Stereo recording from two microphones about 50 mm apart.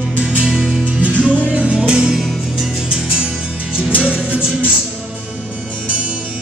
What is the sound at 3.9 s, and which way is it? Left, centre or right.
Music, right.